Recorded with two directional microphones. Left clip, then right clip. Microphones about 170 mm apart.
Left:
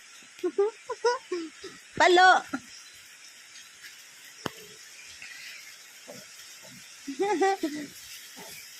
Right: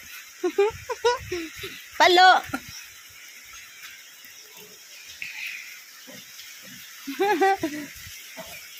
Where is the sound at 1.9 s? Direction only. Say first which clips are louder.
Right 3 dB; 15° left (ahead or behind).